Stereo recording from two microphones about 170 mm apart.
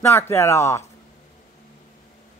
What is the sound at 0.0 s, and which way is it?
Speech, 15° left (ahead or behind).